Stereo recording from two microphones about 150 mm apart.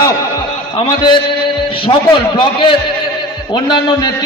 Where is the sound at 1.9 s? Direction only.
35° left (ahead or behind).